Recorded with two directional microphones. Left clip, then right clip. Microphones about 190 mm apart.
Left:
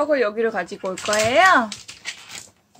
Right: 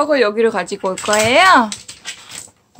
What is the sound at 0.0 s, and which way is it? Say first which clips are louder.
Speech: right 6 dB; 20° right (ahead or behind).